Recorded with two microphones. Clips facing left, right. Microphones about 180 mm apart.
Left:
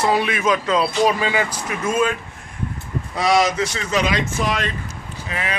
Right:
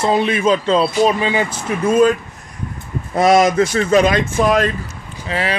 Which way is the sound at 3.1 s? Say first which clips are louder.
Right 6 dB; 50° right (ahead or behind).